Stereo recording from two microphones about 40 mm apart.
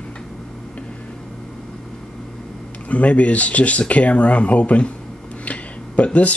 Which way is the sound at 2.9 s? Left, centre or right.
Left.